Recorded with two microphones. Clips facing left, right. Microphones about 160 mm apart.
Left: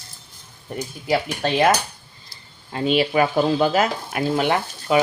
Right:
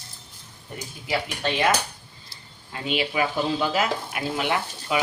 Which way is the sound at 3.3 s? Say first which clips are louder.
Left 6 dB; 50° left (ahead or behind).